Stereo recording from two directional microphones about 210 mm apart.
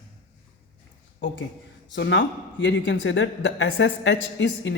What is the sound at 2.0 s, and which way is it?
A man's voice, 60° left (ahead or behind).